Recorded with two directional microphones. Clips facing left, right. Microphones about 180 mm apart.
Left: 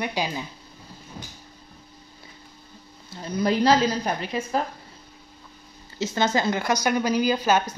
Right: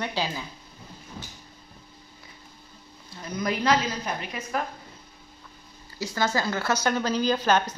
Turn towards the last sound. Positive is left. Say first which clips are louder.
# left 1 dB
turn(degrees=10)  # may be behind; listen again after turning